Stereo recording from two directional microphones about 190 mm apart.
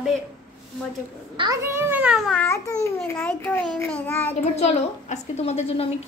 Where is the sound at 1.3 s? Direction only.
25° right (ahead or behind).